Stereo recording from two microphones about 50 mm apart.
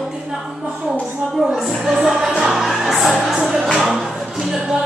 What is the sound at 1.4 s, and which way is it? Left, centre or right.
Music, centre.